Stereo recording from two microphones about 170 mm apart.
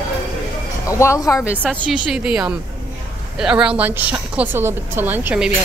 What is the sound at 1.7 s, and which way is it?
A woman's voice, centre (ahead or behind).